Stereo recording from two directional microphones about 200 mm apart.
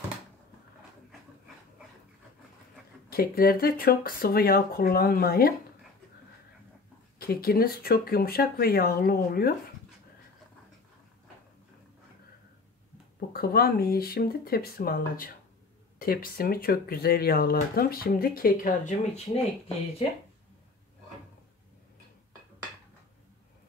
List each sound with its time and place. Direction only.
3.1 s speech: 50° left (ahead or behind)
7.2 s speech: 50° left (ahead or behind)
13.3 s speech: 50° left (ahead or behind)